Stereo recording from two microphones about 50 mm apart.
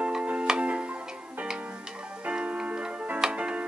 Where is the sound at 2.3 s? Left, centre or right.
Centre.